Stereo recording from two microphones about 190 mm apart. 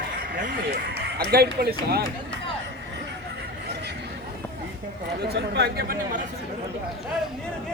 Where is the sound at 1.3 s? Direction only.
55° right (ahead or behind).